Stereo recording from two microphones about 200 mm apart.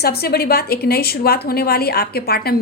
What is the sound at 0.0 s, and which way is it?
A woman's voice, 50° left (ahead or behind).